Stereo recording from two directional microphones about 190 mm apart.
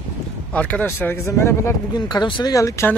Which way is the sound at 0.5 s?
5° left (ahead or behind).